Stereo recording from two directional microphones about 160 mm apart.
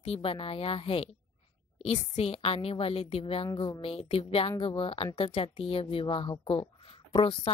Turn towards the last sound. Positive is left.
turn(degrees=35)  # may be behind; listen again after turning